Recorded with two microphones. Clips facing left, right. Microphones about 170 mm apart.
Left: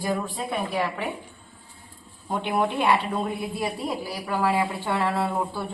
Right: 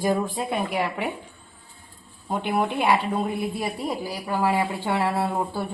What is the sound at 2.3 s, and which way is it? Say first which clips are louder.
Speech: even; 10° right (ahead or behind).